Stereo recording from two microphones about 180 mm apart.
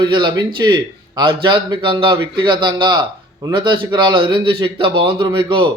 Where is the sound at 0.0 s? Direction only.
25° right (ahead or behind).